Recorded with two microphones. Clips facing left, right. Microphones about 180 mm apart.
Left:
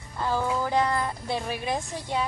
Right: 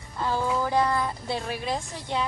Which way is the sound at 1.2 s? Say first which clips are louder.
Even; 20° left (ahead or behind).